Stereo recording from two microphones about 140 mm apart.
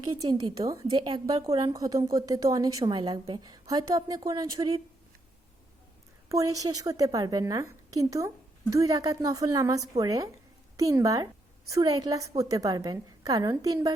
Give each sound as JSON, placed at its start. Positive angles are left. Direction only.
{"t": 0.0, "sound": "a woman's voice", "side_deg": -30}
{"t": 6.2, "sound": "a woman's voice", "side_deg": -25}